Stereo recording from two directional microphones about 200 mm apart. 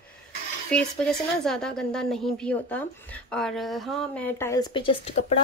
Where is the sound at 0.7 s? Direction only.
5° left (ahead or behind).